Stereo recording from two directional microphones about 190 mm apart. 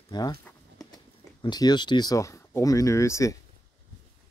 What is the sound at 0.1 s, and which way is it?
Speech, 20° left (ahead or behind).